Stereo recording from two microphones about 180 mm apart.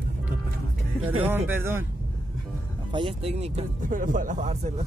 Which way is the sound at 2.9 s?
30° right (ahead or behind).